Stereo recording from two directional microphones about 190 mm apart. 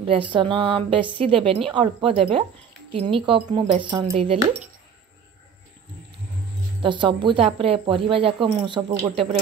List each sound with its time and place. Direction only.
0.0 s speech: 25° right (ahead or behind)
6.8 s speech: 25° right (ahead or behind)